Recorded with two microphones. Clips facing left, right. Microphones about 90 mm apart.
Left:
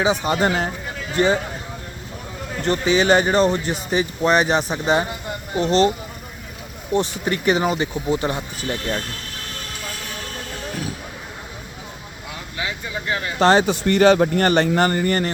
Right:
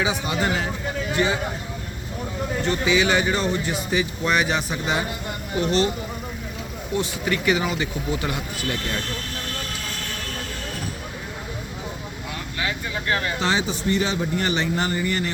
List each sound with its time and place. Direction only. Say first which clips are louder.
0.3 s speech: left 4 dB; 40° left (ahead or behind)
2.6 s speech: left 4 dB; 40° left (ahead or behind)
6.9 s speech: left 4 dB; 35° left (ahead or behind)
12.5 s vehicle: even; 15° left (ahead or behind)
13.4 s a man's voice: left 8 dB; 50° left (ahead or behind)